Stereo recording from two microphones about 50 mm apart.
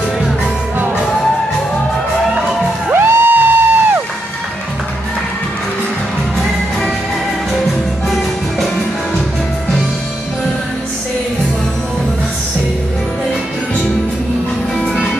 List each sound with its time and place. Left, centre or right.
2.9 s music: right
3.3 s music: right
14.8 s music: centre